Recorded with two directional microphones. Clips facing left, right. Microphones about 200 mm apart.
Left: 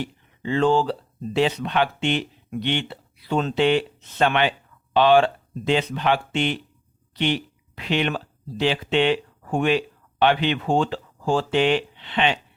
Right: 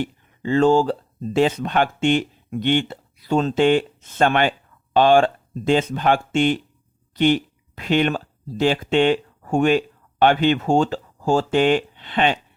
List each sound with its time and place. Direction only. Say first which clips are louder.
0.0 s speech: right 4 dB; 45° right (ahead or behind)